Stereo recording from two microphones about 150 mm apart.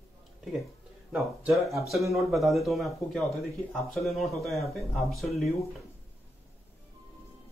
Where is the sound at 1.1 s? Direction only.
Centre (ahead or behind).